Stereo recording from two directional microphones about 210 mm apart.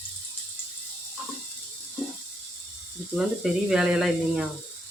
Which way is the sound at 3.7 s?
5° right (ahead or behind).